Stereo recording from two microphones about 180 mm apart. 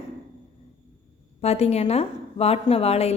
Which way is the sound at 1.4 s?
35° left (ahead or behind).